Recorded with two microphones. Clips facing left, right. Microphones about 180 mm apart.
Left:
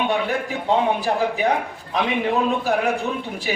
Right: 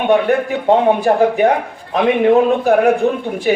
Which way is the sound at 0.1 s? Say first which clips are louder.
Right 9 dB; 55° right (ahead or behind).